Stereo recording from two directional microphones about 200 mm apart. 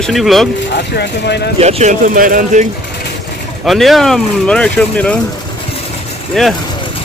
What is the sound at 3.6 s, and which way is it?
Music, centre (ahead or behind).